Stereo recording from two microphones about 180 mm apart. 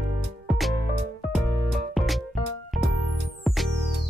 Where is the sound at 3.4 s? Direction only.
Centre (ahead or behind).